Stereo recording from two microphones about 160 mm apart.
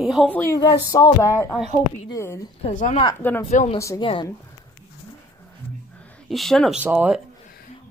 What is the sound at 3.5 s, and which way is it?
Speech, 50° left (ahead or behind).